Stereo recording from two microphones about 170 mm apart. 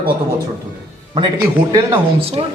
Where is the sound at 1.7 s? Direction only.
30° right (ahead or behind).